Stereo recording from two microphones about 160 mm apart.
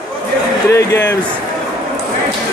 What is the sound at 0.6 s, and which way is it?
Speech, 15° left (ahead or behind).